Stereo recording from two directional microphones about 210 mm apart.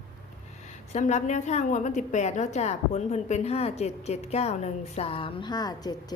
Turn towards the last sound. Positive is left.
turn(degrees=20)  # may be behind; listen again after turning